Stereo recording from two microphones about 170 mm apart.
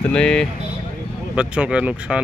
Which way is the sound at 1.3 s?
5° right (ahead or behind).